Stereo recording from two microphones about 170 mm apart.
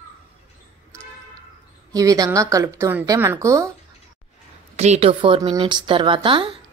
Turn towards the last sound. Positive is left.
turn(degrees=-30)  # may be behind; listen again after turning